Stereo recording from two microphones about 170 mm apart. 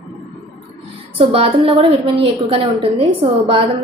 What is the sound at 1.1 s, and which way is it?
A woman's voice, 35° right (ahead or behind).